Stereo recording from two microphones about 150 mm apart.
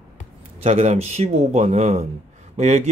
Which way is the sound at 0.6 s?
45° right (ahead or behind).